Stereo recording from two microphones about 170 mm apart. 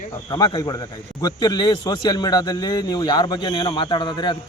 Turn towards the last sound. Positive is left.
turn(degrees=30)  # may be behind; listen again after turning